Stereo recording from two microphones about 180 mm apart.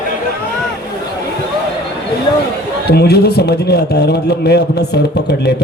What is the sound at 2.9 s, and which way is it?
A man's voice, 65° left (ahead or behind).